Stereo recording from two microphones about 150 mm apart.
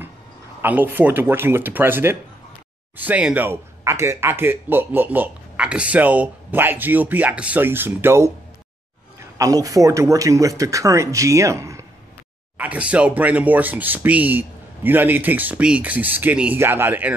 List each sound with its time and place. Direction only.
0.6 s speech: 15° right (ahead or behind)
9.4 s speech: 25° right (ahead or behind)
12.5 s speech: 10° right (ahead or behind)